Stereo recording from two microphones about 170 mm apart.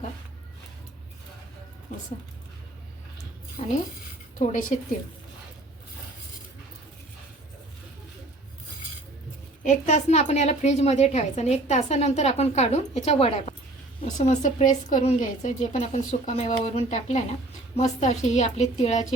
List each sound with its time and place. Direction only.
3.6 s a woman's voice: 35° left (ahead or behind)
4.4 s a woman's voice: 45° left (ahead or behind)
9.6 s a woman's voice: 45° left (ahead or behind)